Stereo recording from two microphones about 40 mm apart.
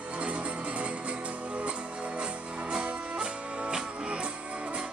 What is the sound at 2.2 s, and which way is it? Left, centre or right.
Music, right.